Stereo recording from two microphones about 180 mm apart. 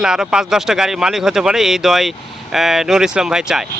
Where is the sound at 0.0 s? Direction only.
5° right (ahead or behind).